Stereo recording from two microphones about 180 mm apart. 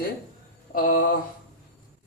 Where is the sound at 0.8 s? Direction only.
50° left (ahead or behind).